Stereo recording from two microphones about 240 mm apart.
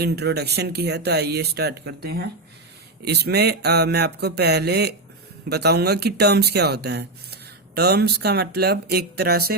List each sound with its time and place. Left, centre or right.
0.0 s speech: right